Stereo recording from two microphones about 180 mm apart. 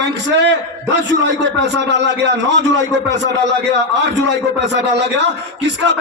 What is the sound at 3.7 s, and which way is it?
A man's voice, 75° right (ahead or behind).